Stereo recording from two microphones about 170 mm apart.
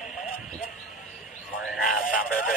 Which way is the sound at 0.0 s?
Centre (ahead or behind).